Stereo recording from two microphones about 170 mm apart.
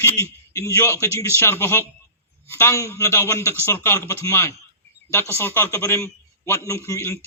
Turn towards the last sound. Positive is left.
turn(degrees=15)  # may be behind; listen again after turning